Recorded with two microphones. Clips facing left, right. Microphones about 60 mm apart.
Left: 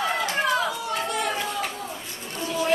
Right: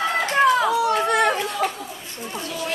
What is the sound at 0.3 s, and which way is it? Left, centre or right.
Children playing, right.